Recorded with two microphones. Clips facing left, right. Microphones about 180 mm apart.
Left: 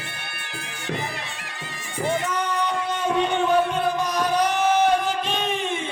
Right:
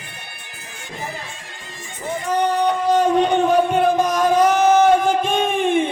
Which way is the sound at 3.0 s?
40° right (ahead or behind).